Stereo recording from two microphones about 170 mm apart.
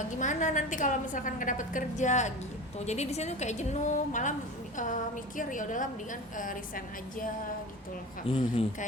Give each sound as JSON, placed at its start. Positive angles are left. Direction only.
{"t": 0.2, "sound": "a woman's voice", "side_deg": 45}
{"t": 5.4, "sound": "a woman's voice", "side_deg": 50}
{"t": 8.3, "sound": "a woman's voice", "side_deg": 30}